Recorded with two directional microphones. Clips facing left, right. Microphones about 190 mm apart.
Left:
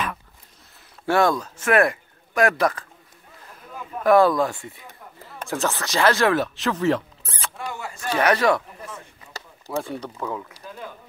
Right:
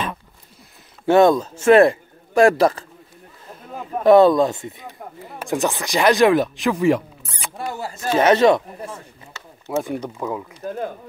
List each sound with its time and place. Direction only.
1.0 s a man's voice: 20° right (ahead or behind)
4.0 s speech: 25° right (ahead or behind)
7.5 s speech: 35° right (ahead or behind)
8.1 s speech: 25° right (ahead or behind)
9.3 s a sound: 40° left (ahead or behind)
9.7 s speech: 15° right (ahead or behind)
10.6 s speech: 50° right (ahead or behind)